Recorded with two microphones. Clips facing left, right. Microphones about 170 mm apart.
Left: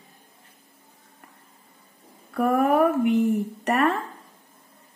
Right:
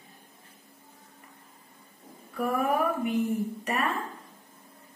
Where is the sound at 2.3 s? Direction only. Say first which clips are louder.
Left 7 dB; 65° left (ahead or behind).